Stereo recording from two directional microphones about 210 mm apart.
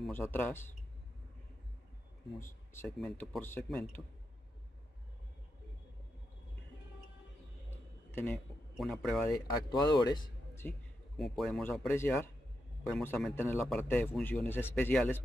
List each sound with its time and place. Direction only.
0.0 s a man's voice: 5° left (ahead or behind)
2.4 s a man's voice: 10° left (ahead or behind)
8.1 s a man's voice: 10° left (ahead or behind)
9.7 s speech: 20° left (ahead or behind)
11.1 s speech: centre (ahead or behind)
11.9 s a man's voice: 10° left (ahead or behind)